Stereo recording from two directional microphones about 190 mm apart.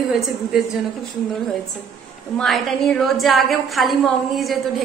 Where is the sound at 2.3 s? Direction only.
Centre (ahead or behind).